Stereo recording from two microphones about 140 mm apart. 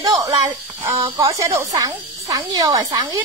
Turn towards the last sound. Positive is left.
turn(degrees=-25)  # may be behind; listen again after turning